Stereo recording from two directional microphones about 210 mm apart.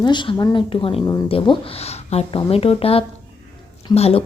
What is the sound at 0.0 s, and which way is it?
Speech, 20° left (ahead or behind).